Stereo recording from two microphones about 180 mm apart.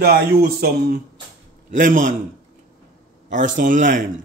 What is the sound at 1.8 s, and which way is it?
Speech, 50° right (ahead or behind).